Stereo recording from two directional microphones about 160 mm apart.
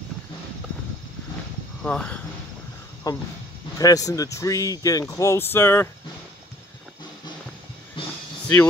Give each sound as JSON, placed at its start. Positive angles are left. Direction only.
{"t": 1.8, "sound": "speech", "side_deg": 5}
{"t": 3.1, "sound": "speech", "side_deg": 25}
{"t": 8.0, "sound": "a sound", "side_deg": 35}